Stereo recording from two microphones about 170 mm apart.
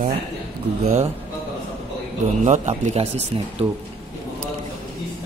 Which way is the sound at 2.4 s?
45° right (ahead or behind).